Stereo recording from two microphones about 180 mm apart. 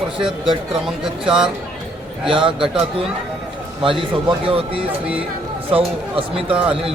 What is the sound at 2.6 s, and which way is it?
Speech, 5° right (ahead or behind).